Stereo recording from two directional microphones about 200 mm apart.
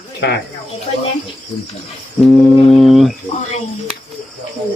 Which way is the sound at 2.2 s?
5° left (ahead or behind).